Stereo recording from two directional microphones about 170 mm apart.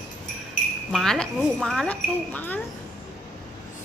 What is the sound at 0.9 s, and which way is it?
Speech, centre (ahead or behind).